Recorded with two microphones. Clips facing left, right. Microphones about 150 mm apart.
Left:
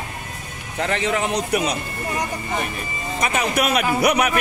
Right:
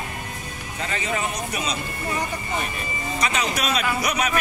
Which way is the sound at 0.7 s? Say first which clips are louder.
Left 6 dB; 65° left (ahead or behind).